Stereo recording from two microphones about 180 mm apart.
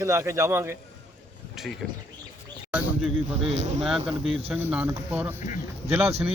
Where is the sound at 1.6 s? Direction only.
Centre (ahead or behind).